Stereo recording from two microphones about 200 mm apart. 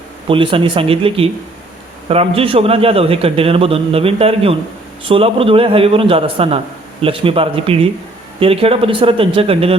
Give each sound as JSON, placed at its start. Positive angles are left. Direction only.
{"t": 0.3, "sound": "a man's voice", "side_deg": -25}